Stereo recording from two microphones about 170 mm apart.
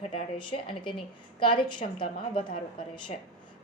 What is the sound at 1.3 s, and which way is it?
A woman's voice, 30° left (ahead or behind).